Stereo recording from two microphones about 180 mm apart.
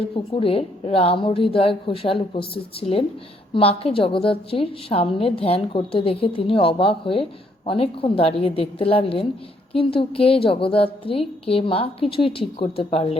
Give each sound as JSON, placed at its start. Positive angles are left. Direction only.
{"t": 0.3, "sound": "a woman's voice", "side_deg": 30}